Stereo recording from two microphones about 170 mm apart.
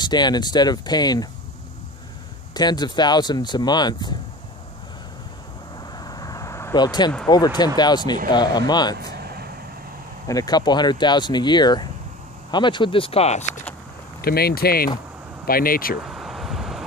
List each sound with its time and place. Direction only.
0.0 s speech: 25° left (ahead or behind)
2.5 s speech: 25° left (ahead or behind)
5.9 s vehicle: 20° left (ahead or behind)
7.2 s speech: 25° left (ahead or behind)
9.2 s vehicle: 65° right (ahead or behind)
10.2 s speech: 20° left (ahead or behind); by 13.5 s 40° left (ahead or behind)
14.2 s speech: 65° left (ahead or behind)
16.1 s vehicle: centre (ahead or behind)